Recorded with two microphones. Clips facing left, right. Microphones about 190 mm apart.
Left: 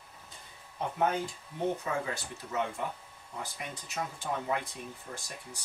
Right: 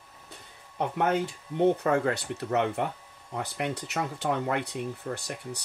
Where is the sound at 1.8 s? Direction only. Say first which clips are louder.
Right 9 dB; 70° right (ahead or behind).